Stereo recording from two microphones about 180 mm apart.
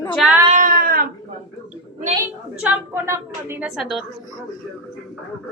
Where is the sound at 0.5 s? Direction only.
50° right (ahead or behind).